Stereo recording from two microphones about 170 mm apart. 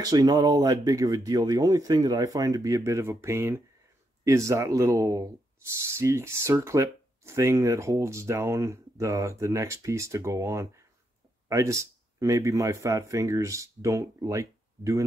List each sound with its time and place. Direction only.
0.0 s speech: 20° right (ahead or behind)